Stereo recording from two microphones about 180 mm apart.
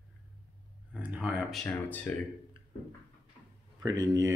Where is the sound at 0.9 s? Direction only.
10° right (ahead or behind).